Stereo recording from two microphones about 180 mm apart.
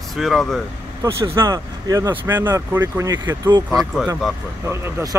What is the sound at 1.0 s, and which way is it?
Speech, 15° right (ahead or behind).